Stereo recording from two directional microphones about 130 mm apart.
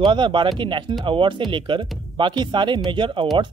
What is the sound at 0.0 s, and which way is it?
Speech, 35° right (ahead or behind).